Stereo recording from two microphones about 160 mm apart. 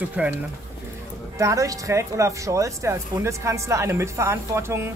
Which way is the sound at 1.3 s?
20° right (ahead or behind).